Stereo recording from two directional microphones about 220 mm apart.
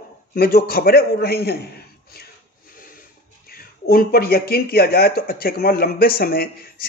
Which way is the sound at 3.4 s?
40° left (ahead or behind).